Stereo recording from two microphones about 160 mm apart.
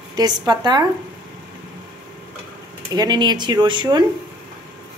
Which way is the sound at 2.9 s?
25° right (ahead or behind).